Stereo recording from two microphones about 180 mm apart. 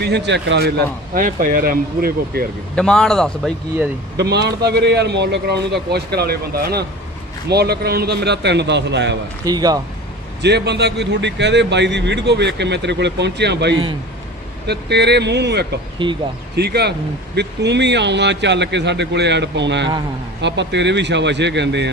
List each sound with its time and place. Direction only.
0.0 s speech: 70° right (ahead or behind)
2.7 s a man's voice: 5° left (ahead or behind)
4.2 s a man's voice: 70° right (ahead or behind)
9.4 s speech: 20° right (ahead or behind)
10.4 s a man's voice: 70° right (ahead or behind)
16.0 s speech: 25° right (ahead or behind)
16.5 s a man's voice: 65° right (ahead or behind)